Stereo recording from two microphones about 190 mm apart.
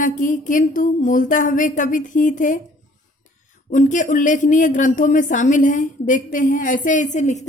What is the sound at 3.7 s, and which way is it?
Speech, 45° left (ahead or behind).